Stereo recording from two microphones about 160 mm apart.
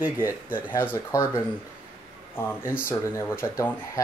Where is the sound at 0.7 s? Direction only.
20° left (ahead or behind).